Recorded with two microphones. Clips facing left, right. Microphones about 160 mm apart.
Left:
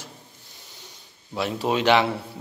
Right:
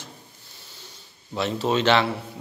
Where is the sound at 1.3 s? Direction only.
10° left (ahead or behind).